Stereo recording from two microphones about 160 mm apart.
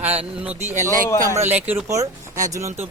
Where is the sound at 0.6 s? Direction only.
50° right (ahead or behind).